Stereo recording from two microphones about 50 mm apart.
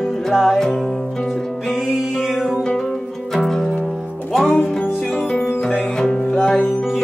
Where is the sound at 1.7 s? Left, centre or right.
Centre.